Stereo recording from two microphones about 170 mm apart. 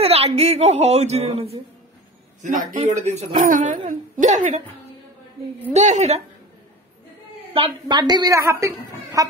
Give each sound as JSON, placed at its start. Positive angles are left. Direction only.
{"t": 0.0, "sound": "a child's voice", "side_deg": -35}
{"t": 5.7, "sound": "a child's voice", "side_deg": -45}
{"t": 7.5, "sound": "a woman's voice", "side_deg": -30}
{"t": 8.4, "sound": "a woman's voice", "side_deg": -15}